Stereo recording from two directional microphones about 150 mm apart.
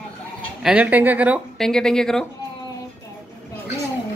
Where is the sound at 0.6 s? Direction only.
5° right (ahead or behind).